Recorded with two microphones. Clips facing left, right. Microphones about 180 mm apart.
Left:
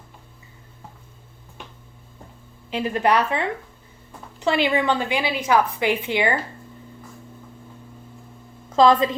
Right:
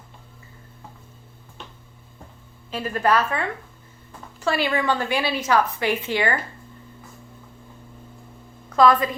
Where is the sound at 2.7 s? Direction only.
15° left (ahead or behind).